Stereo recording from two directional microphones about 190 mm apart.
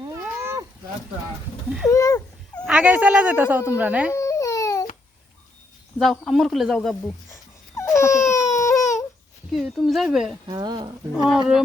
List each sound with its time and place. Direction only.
0.0 s cat: 15° right (ahead or behind)
1.9 s speech: 15° left (ahead or behind)
2.6 s a woman's voice: 5° right (ahead or behind)
4.1 s babbling: 15° left (ahead or behind)
6.0 s a man's voice: centre (ahead or behind)
7.8 s baby cry: 15° left (ahead or behind)
8.8 s a sound: 15° left (ahead or behind)
9.5 s a man's voice: centre (ahead or behind)
10.4 s speech: 20° right (ahead or behind)